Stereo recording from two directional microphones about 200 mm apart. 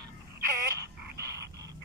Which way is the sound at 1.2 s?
15° right (ahead or behind).